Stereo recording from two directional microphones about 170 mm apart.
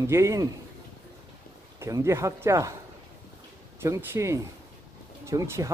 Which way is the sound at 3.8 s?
15° right (ahead or behind).